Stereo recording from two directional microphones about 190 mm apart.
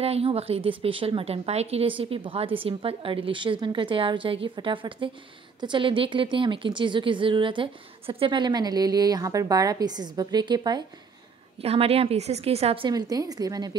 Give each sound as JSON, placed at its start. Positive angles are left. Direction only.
{"t": 0.0, "sound": "a woman's voice", "side_deg": -30}